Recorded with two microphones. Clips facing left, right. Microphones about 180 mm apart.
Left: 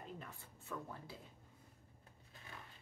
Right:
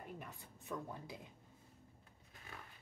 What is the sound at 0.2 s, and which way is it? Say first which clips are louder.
Speech: right 1 dB; 15° right (ahead or behind).